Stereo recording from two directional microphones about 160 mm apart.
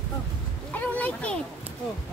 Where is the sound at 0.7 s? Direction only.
10° left (ahead or behind).